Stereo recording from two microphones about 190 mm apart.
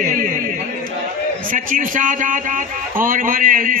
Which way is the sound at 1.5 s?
45° right (ahead or behind).